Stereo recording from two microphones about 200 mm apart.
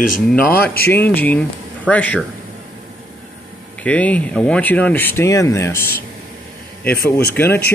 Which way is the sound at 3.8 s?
5° left (ahead or behind).